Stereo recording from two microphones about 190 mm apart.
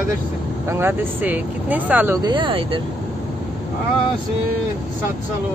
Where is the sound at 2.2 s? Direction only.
25° right (ahead or behind).